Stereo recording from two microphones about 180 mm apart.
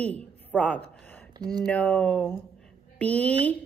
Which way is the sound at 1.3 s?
20° right (ahead or behind).